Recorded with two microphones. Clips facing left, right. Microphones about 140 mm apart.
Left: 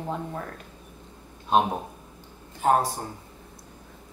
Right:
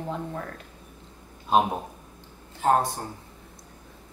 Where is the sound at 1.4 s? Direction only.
Centre (ahead or behind).